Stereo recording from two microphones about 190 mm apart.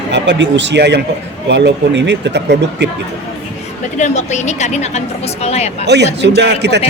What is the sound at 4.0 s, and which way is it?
A woman's voice, 40° left (ahead or behind).